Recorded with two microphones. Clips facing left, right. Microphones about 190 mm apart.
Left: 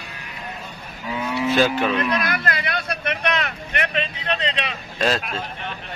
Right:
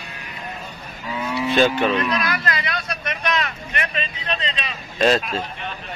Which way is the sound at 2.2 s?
55° left (ahead or behind).